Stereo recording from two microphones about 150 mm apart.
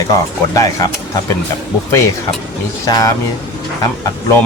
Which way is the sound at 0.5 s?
20° left (ahead or behind).